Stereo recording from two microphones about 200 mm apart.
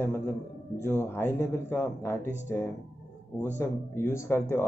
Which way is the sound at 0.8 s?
10° left (ahead or behind).